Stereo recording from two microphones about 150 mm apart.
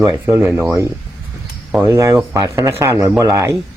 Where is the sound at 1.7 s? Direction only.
15° right (ahead or behind).